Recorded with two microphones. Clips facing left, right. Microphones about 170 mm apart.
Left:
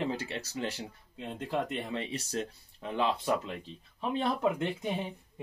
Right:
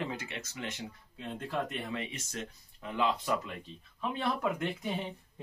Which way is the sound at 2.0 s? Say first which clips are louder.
Left 5 dB; 35° left (ahead or behind).